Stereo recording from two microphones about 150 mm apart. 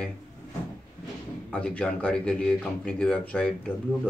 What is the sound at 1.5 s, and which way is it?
Speech, 10° left (ahead or behind).